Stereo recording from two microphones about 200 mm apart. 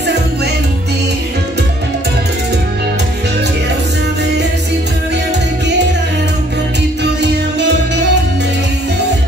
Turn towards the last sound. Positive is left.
turn(degrees=-60)  # may be behind; listen again after turning